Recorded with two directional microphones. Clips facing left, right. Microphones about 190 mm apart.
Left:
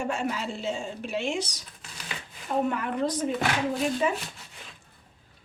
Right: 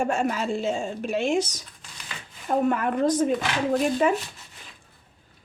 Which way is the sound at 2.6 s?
50° right (ahead or behind).